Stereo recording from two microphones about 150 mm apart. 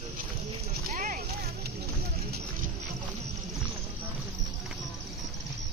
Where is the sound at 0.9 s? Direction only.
75° right (ahead or behind).